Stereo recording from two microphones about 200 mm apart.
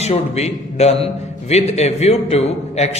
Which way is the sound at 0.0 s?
35° left (ahead or behind).